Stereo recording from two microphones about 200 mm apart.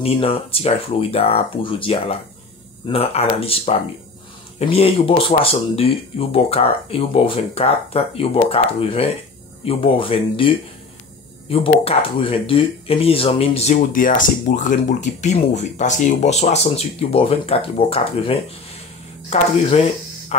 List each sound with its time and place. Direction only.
0.0 s speech: 30° left (ahead or behind)
13.7 s speech: 40° left (ahead or behind)
19.7 s a sound: 30° left (ahead or behind)